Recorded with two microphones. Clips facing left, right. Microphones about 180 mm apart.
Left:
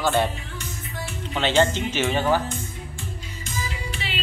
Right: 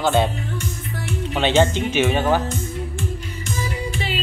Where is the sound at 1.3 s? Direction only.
15° right (ahead or behind).